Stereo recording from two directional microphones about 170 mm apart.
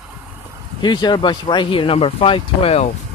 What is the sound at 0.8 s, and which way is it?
Speech, 25° left (ahead or behind).